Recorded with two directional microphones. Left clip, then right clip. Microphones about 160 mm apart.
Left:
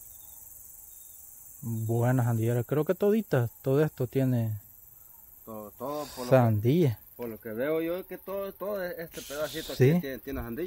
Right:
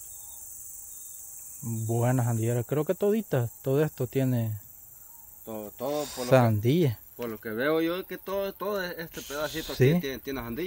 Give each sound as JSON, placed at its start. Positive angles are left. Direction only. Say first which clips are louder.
{"t": 1.7, "sound": "speech", "louder": "right 1 dB", "side_deg": 10}
{"t": 5.4, "sound": "speech", "louder": "right 4 dB", "side_deg": -60}
{"t": 6.0, "sound": "speech", "louder": "right 1 dB", "side_deg": 5}
{"t": 7.2, "sound": "speech", "louder": "right 3 dB", "side_deg": -85}
{"t": 9.1, "sound": "speech", "louder": "right 1 dB", "side_deg": 15}
{"t": 10.0, "sound": "speech", "louder": "right 3 dB", "side_deg": -90}